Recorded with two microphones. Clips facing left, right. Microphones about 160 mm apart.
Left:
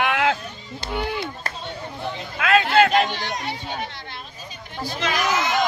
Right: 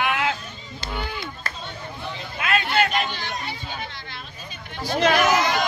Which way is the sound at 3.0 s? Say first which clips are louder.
Left 3 dB; 75° left (ahead or behind).